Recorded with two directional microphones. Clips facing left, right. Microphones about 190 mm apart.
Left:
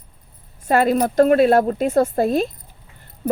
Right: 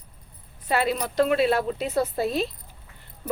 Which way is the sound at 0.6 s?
45° left (ahead or behind).